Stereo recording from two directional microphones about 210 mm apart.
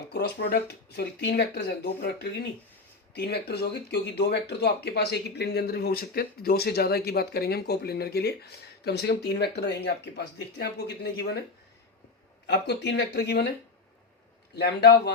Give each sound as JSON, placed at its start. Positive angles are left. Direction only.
{"t": 0.1, "sound": "speech", "side_deg": 50}
{"t": 3.2, "sound": "speech", "side_deg": 50}
{"t": 12.5, "sound": "speech", "side_deg": 55}
{"t": 14.5, "sound": "speech", "side_deg": 50}